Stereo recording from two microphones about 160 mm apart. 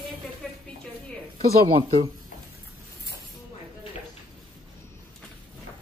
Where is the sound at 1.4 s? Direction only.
35° right (ahead or behind).